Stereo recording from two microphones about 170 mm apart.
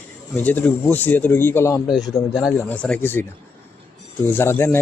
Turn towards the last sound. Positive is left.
turn(degrees=15)  # may be behind; listen again after turning